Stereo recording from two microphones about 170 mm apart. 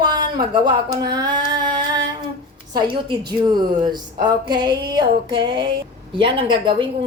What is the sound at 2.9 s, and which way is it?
A woman's voice, 25° right (ahead or behind).